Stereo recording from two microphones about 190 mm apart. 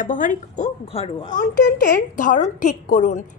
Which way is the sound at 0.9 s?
30° left (ahead or behind).